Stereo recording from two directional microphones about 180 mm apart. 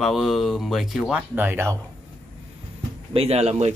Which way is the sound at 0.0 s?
Centre (ahead or behind).